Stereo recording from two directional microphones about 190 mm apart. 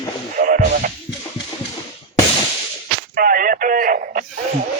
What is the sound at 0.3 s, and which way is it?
Music, 45° right (ahead or behind).